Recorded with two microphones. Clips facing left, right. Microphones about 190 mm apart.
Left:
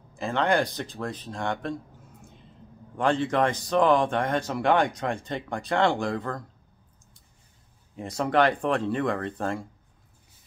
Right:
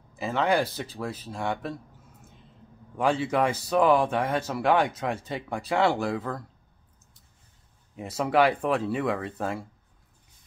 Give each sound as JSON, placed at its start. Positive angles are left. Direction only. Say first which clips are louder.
{"t": 0.1, "sound": "speech", "louder": "even", "side_deg": -5}
{"t": 3.0, "sound": "speech", "louder": "left 1 dB", "side_deg": -10}
{"t": 7.9, "sound": "speech", "louder": "even", "side_deg": -5}